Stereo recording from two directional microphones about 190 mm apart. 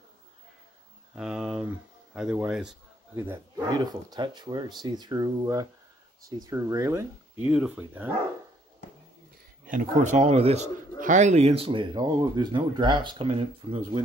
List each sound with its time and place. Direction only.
1.1 s a sound: 5° right (ahead or behind)
2.1 s a man's voice: 5° right (ahead or behind)
3.6 s speech: 20° right (ahead or behind)
9.7 s speech: 40° right (ahead or behind)